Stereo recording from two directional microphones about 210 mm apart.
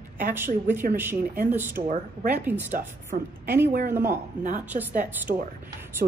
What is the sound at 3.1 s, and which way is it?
Speech, 45° right (ahead or behind).